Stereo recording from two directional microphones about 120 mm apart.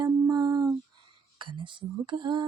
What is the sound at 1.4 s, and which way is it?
Speech, 45° right (ahead or behind).